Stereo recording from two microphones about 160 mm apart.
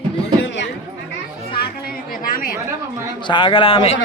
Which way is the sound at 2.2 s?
60° left (ahead or behind).